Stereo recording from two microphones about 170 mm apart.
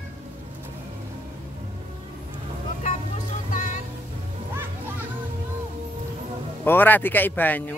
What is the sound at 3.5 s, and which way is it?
Music, 50° left (ahead or behind).